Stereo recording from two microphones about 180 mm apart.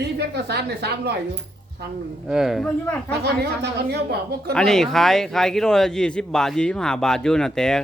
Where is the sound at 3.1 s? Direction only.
65° right (ahead or behind).